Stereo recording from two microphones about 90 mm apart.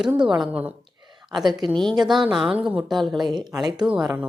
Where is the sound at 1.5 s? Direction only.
55° right (ahead or behind).